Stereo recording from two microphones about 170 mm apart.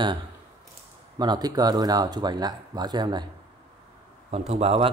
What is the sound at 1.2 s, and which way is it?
A man's voice, 25° right (ahead or behind).